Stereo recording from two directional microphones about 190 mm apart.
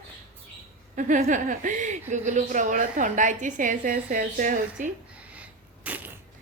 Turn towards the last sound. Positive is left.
turn(degrees=-10)  # may be behind; listen again after turning